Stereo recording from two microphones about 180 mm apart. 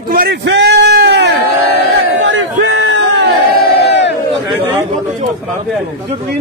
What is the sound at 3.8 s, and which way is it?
Crowd, 75° left (ahead or behind).